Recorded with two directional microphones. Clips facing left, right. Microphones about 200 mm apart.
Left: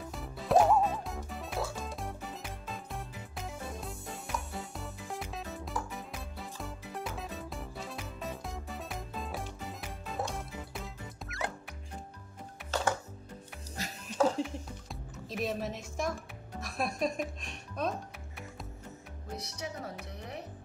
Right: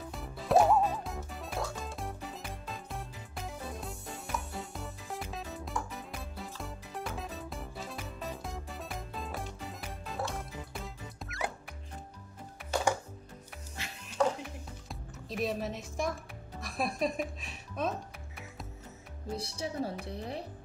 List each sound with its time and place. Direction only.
0.1 s music: centre (ahead or behind)
13.7 s music: 40° left (ahead or behind)
14.4 s music: centre (ahead or behind)
19.3 s speech: 30° right (ahead or behind)